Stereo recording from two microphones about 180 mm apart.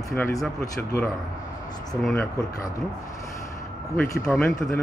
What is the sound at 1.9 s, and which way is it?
Speech, 5° left (ahead or behind).